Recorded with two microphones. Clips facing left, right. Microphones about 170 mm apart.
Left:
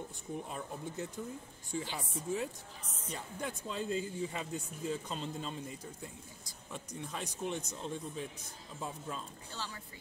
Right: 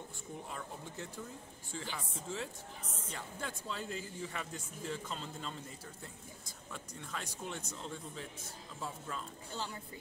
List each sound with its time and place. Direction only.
0.5 s speech: 20° left (ahead or behind)
7.0 s speech: 20° left (ahead or behind)
9.5 s a woman's voice: 20° right (ahead or behind)